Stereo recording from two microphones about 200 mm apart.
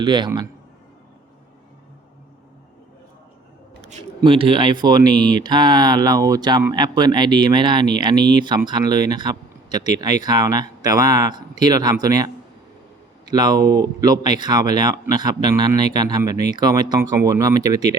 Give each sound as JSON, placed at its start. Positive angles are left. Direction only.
{"t": 0.0, "sound": "speech", "side_deg": -25}
{"t": 4.2, "sound": "speech", "side_deg": -25}
{"t": 13.3, "sound": "speech", "side_deg": -20}